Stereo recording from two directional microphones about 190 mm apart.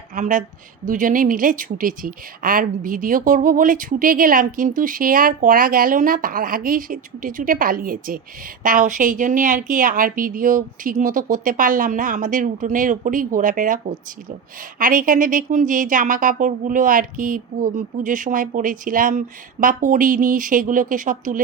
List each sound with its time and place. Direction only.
0.2 s a woman's voice: 45° right (ahead or behind)
14.8 s a woman's voice: 45° right (ahead or behind)